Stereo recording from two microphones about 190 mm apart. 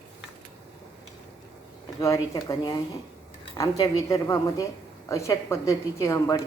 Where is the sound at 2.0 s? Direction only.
20° left (ahead or behind).